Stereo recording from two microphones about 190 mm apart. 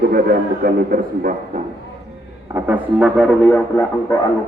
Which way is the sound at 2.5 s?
5° right (ahead or behind).